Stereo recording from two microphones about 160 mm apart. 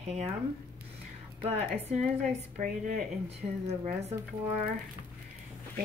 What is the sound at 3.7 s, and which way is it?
Speech, 40° right (ahead or behind).